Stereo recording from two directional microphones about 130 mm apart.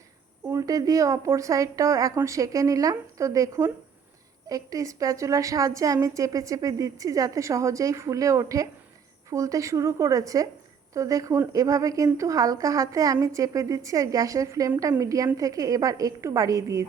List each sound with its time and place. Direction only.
0.4 s a woman's voice: 25° right (ahead or behind)